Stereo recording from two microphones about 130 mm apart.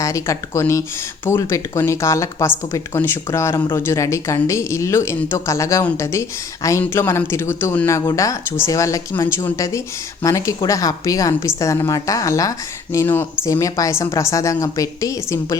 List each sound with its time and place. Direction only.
0.0 s speech: 25° left (ahead or behind)